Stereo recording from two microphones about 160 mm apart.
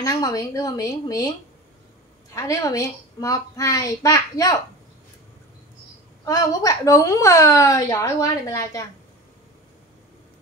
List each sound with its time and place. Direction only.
0.0 s a woman's voice: 25° left (ahead or behind)
2.3 s a woman's voice: 20° left (ahead or behind)
6.2 s a woman's voice: 20° left (ahead or behind)